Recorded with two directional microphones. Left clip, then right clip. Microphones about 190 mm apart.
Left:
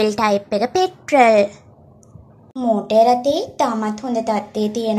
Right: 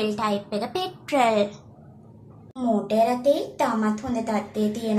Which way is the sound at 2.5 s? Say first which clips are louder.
Left 8 dB; 20° left (ahead or behind).